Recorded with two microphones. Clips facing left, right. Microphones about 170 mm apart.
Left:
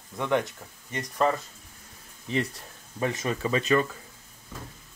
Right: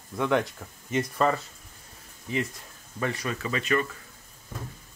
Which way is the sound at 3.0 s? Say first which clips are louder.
Left 2 dB; 20° left (ahead or behind).